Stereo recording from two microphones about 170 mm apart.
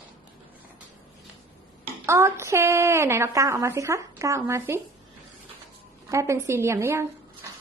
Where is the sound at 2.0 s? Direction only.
15° right (ahead or behind).